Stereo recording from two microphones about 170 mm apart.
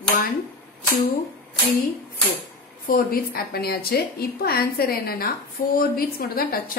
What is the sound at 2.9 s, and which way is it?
A woman's voice, 60° left (ahead or behind).